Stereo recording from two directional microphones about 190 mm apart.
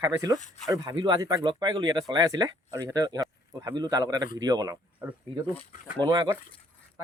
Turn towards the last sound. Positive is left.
turn(degrees=-20)  # may be behind; listen again after turning